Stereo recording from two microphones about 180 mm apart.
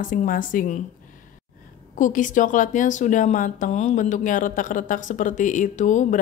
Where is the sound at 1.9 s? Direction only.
45° left (ahead or behind).